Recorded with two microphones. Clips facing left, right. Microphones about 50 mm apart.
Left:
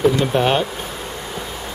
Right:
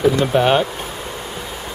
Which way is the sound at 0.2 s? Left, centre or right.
Centre.